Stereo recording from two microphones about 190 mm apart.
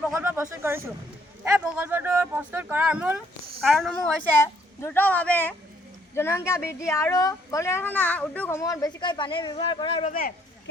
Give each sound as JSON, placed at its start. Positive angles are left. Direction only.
{"t": 0.1, "sound": "a sound", "side_deg": -15}
{"t": 1.5, "sound": "speech", "side_deg": -5}
{"t": 4.4, "sound": "speech", "side_deg": 15}